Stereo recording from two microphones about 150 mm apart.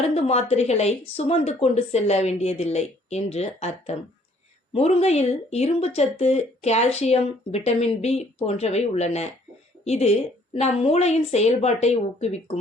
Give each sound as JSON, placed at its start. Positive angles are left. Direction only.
{"t": 0.0, "sound": "speech", "side_deg": 45}